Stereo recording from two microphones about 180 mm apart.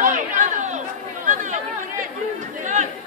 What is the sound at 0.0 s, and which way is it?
Chatter, 45° right (ahead or behind).